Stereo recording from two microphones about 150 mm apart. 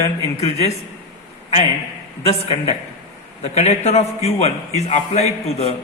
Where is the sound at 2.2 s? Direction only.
40° left (ahead or behind).